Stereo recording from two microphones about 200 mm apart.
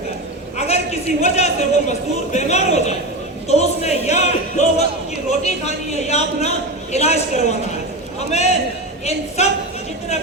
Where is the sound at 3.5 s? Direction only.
35° left (ahead or behind).